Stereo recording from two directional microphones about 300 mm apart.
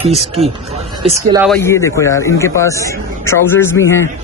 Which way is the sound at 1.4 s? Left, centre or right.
Centre.